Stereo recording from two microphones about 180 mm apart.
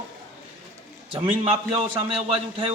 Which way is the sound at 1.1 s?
30° right (ahead or behind).